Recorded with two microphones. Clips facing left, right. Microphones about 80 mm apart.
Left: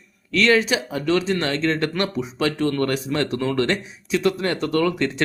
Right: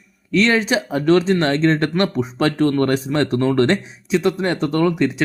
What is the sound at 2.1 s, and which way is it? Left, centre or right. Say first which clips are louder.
Speech: right 5 dB; right.